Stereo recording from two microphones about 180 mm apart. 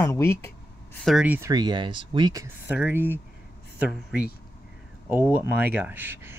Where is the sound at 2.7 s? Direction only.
10° right (ahead or behind).